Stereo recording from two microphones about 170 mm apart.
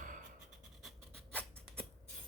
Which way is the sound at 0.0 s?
50° right (ahead or behind).